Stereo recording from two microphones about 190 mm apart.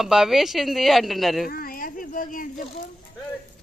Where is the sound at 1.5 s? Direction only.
50° left (ahead or behind).